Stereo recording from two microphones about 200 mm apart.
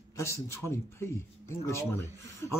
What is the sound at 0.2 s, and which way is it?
Speech, 15° left (ahead or behind).